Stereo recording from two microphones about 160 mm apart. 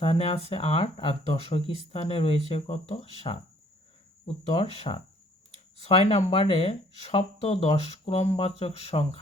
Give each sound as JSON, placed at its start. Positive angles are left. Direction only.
{"t": 0.0, "sound": "speech", "side_deg": 40}
{"t": 4.4, "sound": "speech", "side_deg": 40}